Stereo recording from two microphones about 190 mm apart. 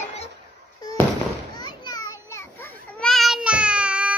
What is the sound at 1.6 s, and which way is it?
Children playing, 20° left (ahead or behind).